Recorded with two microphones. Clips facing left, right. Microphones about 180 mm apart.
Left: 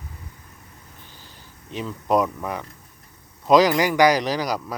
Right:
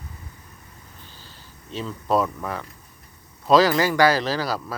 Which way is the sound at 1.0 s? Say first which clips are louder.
Even; 15° left (ahead or behind).